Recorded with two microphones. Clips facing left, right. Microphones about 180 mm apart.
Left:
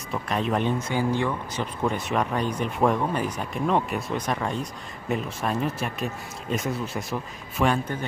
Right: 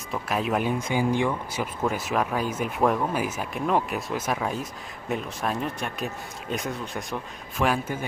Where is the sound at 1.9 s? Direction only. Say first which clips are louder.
Left 1 dB; centre (ahead or behind).